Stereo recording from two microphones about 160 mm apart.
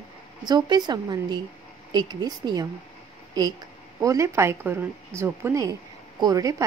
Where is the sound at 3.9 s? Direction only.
20° right (ahead or behind).